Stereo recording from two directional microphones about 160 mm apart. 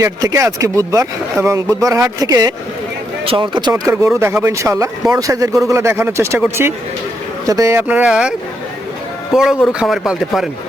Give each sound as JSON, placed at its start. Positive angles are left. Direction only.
{"t": 0.0, "sound": "speech", "side_deg": -20}
{"t": 7.4, "sound": "speech", "side_deg": -20}